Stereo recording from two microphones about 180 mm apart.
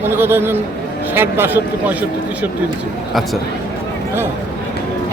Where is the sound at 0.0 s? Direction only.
15° right (ahead or behind).